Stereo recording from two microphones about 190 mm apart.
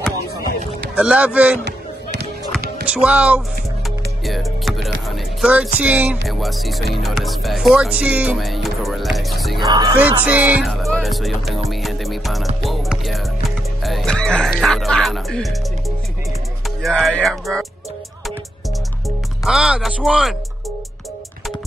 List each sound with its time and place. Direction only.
0.9 s music: 5° right (ahead or behind)
1.6 s a sound: 60° right (ahead or behind)
2.9 s music: 5° right (ahead or behind)
5.1 s speech: 5° right (ahead or behind)
9.7 s speech: 25° right (ahead or behind)
9.9 s music: 10° right (ahead or behind)
10.7 s speech: centre (ahead or behind)
11.7 s music: centre (ahead or behind)
16.6 s speech: centre (ahead or behind)
19.0 s speech: centre (ahead or behind)